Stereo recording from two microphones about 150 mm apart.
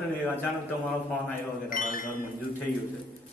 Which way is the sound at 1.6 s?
65° left (ahead or behind).